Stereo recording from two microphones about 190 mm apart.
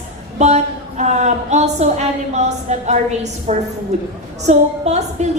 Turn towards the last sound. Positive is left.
turn(degrees=-35)  # may be behind; listen again after turning